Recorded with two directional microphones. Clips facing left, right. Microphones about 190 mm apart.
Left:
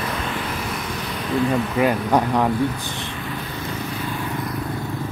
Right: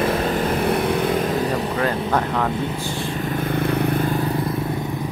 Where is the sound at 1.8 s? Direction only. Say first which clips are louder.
Left 4 dB; 15° left (ahead or behind).